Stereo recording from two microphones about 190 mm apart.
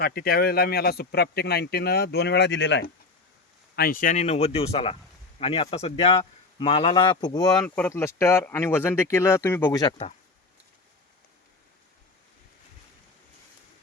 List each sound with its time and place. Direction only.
0.0 s speech: 55° left (ahead or behind)
3.8 s speech: 50° left (ahead or behind); by 10.1 s 20° left (ahead or behind)